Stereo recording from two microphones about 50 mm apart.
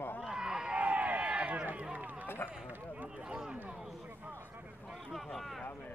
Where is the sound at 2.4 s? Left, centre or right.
Left.